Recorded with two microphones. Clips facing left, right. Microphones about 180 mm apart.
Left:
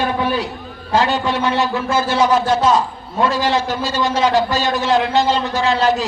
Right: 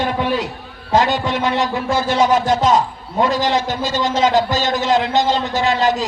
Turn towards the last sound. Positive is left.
turn(degrees=-20)  # may be behind; listen again after turning